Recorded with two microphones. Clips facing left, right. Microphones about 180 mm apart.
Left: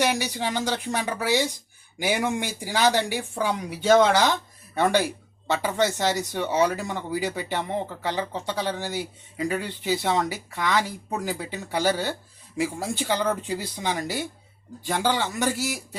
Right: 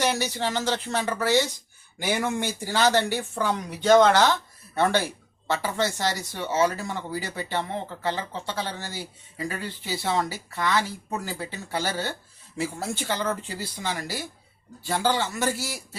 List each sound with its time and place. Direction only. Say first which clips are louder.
0.0 s speech: left 1 dB; 15° left (ahead or behind)